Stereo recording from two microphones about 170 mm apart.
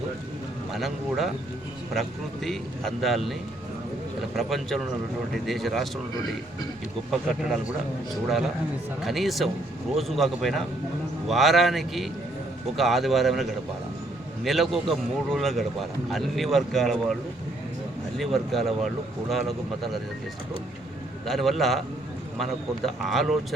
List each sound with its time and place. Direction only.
0.7 s a man's voice: centre (ahead or behind)
4.4 s a man's voice: centre (ahead or behind)
7.1 s a man's voice: centre (ahead or behind)
18.2 s a man's voice: centre (ahead or behind)
21.2 s a man's voice: centre (ahead or behind)
23.0 s a man's voice: centre (ahead or behind)